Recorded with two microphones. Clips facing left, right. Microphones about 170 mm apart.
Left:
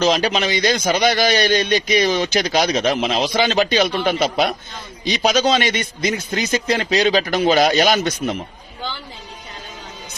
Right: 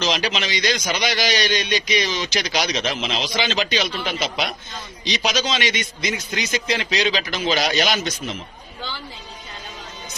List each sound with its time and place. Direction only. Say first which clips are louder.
0.0 s a man's voice: left 6 dB; 45° left (ahead or behind)